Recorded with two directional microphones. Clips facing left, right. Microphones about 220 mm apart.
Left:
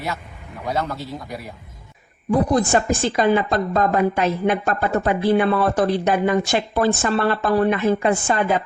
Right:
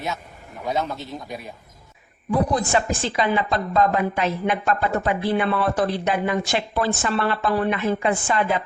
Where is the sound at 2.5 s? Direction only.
45° left (ahead or behind).